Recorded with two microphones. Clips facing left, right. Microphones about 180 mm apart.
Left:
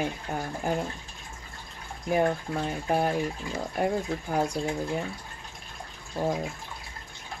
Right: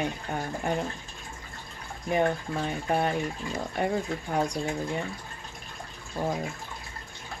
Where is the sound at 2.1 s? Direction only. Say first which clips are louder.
Left 1 dB; centre (ahead or behind).